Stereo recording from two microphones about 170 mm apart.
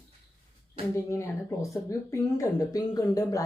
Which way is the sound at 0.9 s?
15° left (ahead or behind).